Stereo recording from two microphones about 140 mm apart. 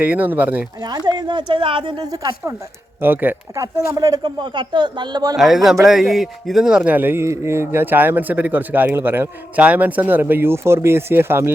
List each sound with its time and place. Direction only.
0.0 s a man's voice: 10° right (ahead or behind)
0.8 s speech: 30° right (ahead or behind)
3.0 s speech: 15° right (ahead or behind); by 5.4 s 30° right (ahead or behind)
5.4 s a man's voice: centre (ahead or behind); by 11.5 s 15° right (ahead or behind)